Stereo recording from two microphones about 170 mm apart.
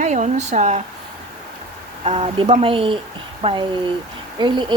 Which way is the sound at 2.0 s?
35° right (ahead or behind).